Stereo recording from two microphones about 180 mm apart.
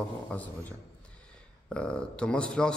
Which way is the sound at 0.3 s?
10° left (ahead or behind).